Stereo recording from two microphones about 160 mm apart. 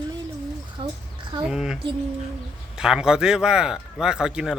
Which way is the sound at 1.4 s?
5° right (ahead or behind).